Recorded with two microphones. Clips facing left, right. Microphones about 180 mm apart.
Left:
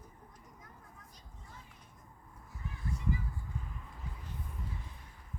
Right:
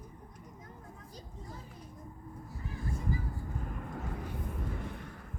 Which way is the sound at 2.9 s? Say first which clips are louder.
Right 1 dB; 40° right (ahead or behind).